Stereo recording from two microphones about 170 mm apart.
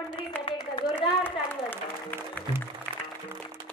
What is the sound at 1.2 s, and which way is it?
Music, 10° left (ahead or behind).